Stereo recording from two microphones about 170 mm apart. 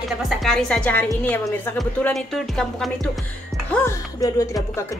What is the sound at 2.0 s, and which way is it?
A woman's voice, centre (ahead or behind).